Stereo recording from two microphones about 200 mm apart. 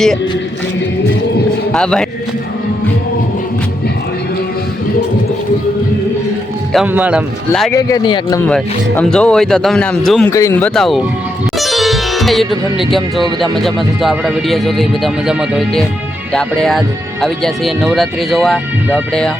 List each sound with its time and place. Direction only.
1.7 s speech: 5° left (ahead or behind)
6.7 s speech: 10° right (ahead or behind)
7.7 s speech: 15° left (ahead or behind)
8.4 s speech: 5° left (ahead or behind)
10.3 s speech: 15° left (ahead or behind)